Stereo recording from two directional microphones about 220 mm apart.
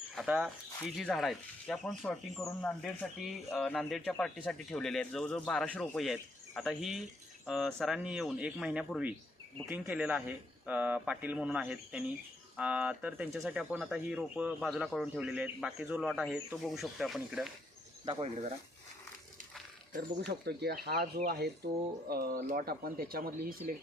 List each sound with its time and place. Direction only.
0.2 s speech: centre (ahead or behind)
18.0 s speech: 25° right (ahead or behind)
20.2 s speech: 45° right (ahead or behind)